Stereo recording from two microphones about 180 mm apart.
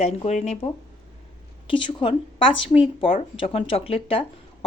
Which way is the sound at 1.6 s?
25° left (ahead or behind).